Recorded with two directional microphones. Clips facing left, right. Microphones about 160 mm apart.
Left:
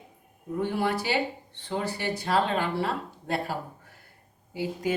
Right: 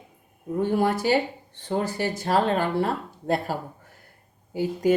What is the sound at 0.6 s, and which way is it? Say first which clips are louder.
Speech: right 5 dB; 45° right (ahead or behind).